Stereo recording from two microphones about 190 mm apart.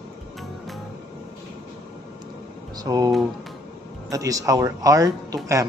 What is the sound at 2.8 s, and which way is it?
Speech, 20° right (ahead or behind).